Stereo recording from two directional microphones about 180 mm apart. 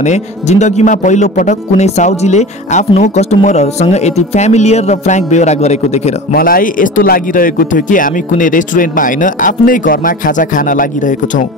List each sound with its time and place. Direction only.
0.0 s speech: 40° left (ahead or behind)
6.3 s speech: 55° left (ahead or behind)